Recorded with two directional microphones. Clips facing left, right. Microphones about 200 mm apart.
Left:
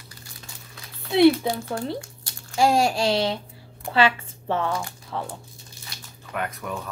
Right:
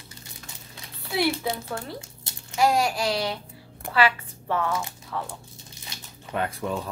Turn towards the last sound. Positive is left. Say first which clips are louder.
# right 2 dB
turn(degrees=-30)  # may be behind; listen again after turning